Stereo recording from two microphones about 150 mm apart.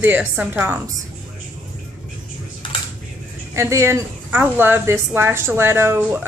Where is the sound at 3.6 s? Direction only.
20° right (ahead or behind).